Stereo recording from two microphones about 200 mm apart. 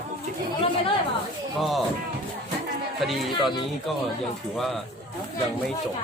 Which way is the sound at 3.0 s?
Centre (ahead or behind).